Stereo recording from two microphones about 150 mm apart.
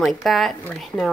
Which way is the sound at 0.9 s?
20° left (ahead or behind).